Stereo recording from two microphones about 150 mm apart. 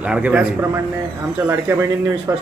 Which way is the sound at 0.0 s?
5° right (ahead or behind).